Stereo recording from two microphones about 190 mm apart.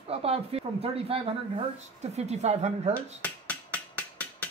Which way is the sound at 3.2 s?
10° left (ahead or behind).